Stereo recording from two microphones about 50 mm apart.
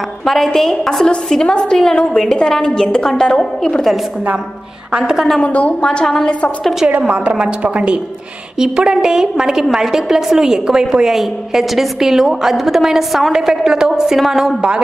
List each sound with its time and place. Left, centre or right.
0.2 s a woman's voice: centre
4.9 s a woman's voice: centre
5.4 s a woman's voice: left
5.9 s a woman's voice: centre
6.6 s a woman's voice: centre
6.9 s a woman's voice: right
11.1 s a woman's voice: centre